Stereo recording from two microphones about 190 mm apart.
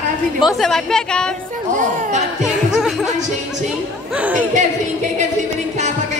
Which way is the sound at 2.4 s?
Centre (ahead or behind).